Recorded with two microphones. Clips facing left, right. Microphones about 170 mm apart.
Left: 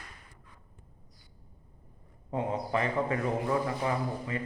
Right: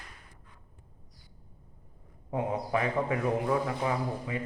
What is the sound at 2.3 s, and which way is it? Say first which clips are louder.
A man's voice: right 1 dB; 10° right (ahead or behind).